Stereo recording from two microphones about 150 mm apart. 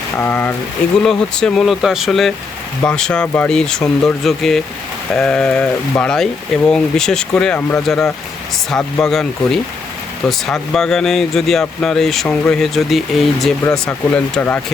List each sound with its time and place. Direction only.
0.2 s speech: 10° left (ahead or behind)